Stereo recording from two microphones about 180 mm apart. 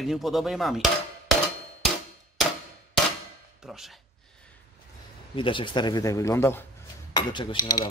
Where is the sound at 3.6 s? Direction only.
Centre (ahead or behind).